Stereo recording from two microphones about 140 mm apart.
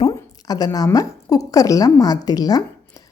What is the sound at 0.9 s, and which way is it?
Speech, 25° left (ahead or behind).